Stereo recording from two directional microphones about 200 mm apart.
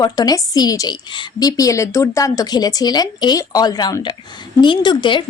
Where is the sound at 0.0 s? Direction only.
20° left (ahead or behind).